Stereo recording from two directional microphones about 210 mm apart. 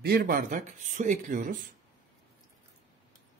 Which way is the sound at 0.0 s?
45° right (ahead or behind).